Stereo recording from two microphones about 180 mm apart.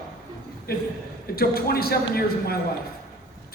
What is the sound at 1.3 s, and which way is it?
A man's voice, 60° left (ahead or behind).